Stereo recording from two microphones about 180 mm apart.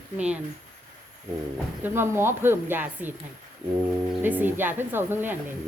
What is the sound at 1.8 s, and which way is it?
Speech, 15° right (ahead or behind).